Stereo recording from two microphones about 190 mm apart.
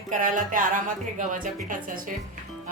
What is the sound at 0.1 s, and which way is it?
Music, 45° right (ahead or behind).